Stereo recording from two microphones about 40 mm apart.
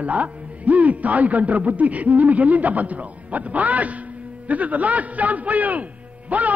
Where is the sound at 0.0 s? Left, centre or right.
Right.